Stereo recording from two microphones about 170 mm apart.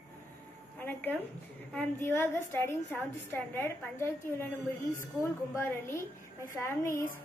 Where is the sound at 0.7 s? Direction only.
10° left (ahead or behind).